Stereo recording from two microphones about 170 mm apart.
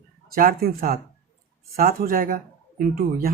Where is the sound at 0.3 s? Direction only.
55° right (ahead or behind).